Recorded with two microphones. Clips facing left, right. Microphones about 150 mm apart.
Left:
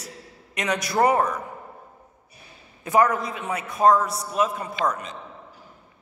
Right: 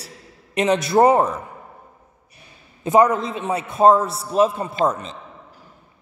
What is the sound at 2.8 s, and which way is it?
A man's voice, 20° right (ahead or behind).